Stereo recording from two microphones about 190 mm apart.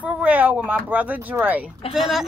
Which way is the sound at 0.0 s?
10° right (ahead or behind).